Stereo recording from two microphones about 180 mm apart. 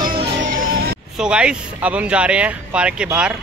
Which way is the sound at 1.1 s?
5° right (ahead or behind).